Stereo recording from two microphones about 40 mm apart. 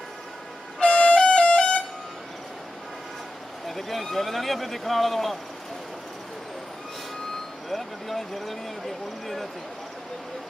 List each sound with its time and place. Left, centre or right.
0.7 s music: left
3.6 s speech: centre
7.7 s speech: centre